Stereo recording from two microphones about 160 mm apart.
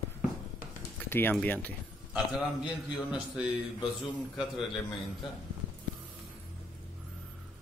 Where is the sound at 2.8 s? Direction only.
5° right (ahead or behind).